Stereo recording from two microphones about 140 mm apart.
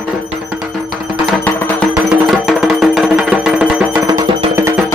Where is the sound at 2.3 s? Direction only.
Centre (ahead or behind).